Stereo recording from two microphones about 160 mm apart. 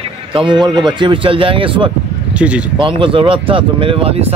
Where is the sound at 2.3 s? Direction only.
5° right (ahead or behind).